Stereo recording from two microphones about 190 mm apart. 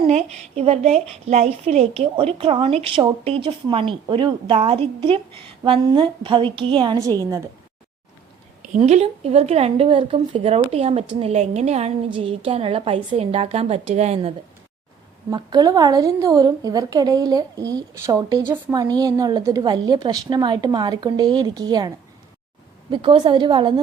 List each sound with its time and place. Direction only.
0.0 s a woman's voice: 35° right (ahead or behind)
8.7 s a woman's voice: 35° right (ahead or behind)
15.3 s a woman's voice: 20° right (ahead or behind)